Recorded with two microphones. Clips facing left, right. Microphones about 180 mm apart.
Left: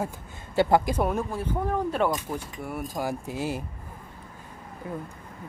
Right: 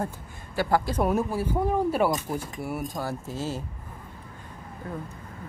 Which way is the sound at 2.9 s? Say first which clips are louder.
Left 2 dB; 15° left (ahead or behind).